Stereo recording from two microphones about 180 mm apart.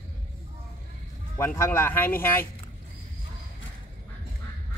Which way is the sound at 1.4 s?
15° left (ahead or behind).